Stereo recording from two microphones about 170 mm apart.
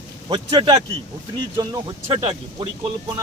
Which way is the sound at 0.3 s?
30° right (ahead or behind).